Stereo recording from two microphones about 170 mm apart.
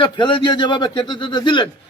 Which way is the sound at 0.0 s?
30° left (ahead or behind).